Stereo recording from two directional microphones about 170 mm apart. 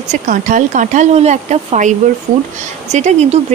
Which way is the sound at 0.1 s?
50° right (ahead or behind).